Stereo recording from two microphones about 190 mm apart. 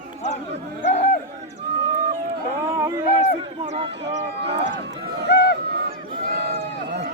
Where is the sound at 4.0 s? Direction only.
65° right (ahead or behind).